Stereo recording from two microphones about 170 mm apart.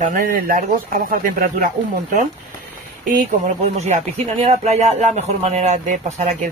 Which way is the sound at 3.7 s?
40° right (ahead or behind).